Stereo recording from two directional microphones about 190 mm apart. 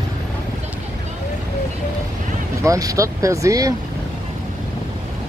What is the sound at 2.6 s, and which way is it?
Speech, 15° right (ahead or behind).